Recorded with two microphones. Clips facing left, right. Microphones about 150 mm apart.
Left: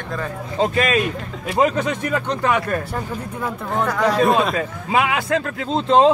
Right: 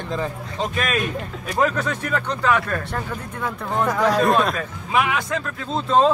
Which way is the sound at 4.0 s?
Centre (ahead or behind).